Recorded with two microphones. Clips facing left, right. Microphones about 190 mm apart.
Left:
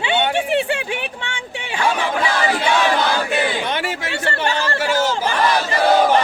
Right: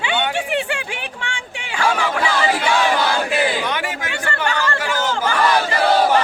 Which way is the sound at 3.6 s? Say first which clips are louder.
Left 1 dB; 25° left (ahead or behind).